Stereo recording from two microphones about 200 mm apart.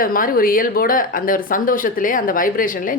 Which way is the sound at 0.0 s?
45° left (ahead or behind).